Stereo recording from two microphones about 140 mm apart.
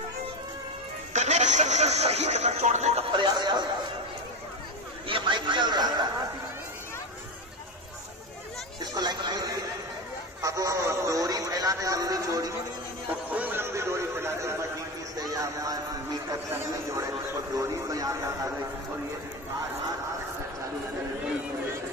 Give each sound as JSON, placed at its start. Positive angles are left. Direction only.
{"t": 1.1, "sound": "speech", "side_deg": -55}
{"t": 3.1, "sound": "a man's voice", "side_deg": -35}
{"t": 5.0, "sound": "a man's voice", "side_deg": -35}
{"t": 8.9, "sound": "speech", "side_deg": -30}
{"t": 13.3, "sound": "a sound", "side_deg": -15}
{"t": 15.1, "sound": "speech", "side_deg": -25}